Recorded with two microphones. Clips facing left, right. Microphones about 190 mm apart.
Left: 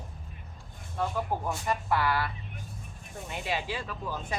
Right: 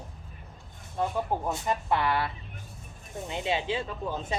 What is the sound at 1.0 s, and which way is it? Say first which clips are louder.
Speech: right 2 dB; 20° right (ahead or behind).